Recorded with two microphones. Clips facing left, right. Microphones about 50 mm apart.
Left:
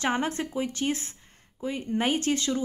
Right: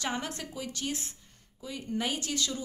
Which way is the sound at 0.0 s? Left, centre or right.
Left.